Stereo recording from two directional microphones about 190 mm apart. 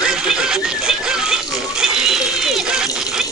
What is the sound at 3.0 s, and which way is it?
Water, centre (ahead or behind).